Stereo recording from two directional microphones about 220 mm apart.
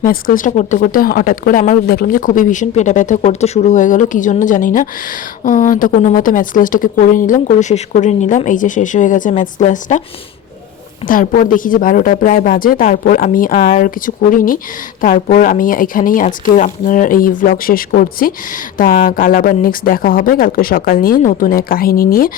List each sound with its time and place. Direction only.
0.0 s speech: 40° left (ahead or behind)
11.0 s speech: 40° left (ahead or behind)